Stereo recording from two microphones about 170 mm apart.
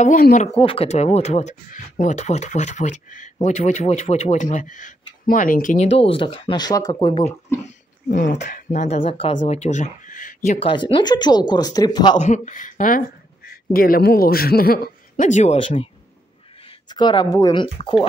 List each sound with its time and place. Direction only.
0.0 s speech: 50° left (ahead or behind)
0.6 s speech: 35° left (ahead or behind); by 5.9 s 50° left (ahead or behind)
5.9 s speech: 30° left (ahead or behind)
7.6 s a sound: 50° left (ahead or behind)
8.5 s speech: 45° left (ahead or behind); by 9.4 s 30° left (ahead or behind)
9.4 s speech: 45° left (ahead or behind)
10.7 s speech: 30° left (ahead or behind)
12.2 s a man's voice: 45° left (ahead or behind)
15.5 s speech: 35° left (ahead or behind)
16.9 s speech: 25° left (ahead or behind)